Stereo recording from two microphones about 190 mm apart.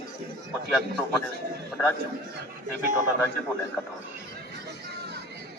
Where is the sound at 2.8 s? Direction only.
45° right (ahead or behind).